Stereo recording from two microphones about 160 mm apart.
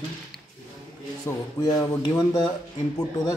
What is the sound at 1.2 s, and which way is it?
Speech, 20° left (ahead or behind).